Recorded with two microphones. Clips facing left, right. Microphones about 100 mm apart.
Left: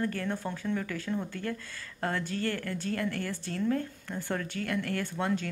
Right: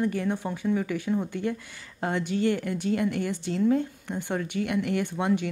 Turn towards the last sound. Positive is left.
turn(degrees=-15)  # may be behind; listen again after turning